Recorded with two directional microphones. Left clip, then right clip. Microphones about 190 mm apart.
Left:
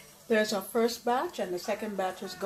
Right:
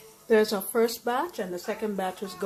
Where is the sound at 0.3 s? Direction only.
45° right (ahead or behind).